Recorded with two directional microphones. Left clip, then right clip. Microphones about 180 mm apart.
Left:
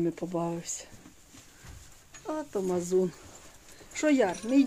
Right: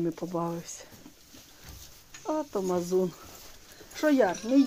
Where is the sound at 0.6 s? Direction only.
25° left (ahead or behind).